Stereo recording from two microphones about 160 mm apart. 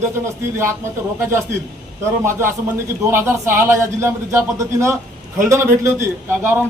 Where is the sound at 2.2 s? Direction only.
15° right (ahead or behind).